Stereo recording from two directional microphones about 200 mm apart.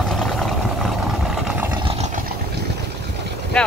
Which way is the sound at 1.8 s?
35° right (ahead or behind).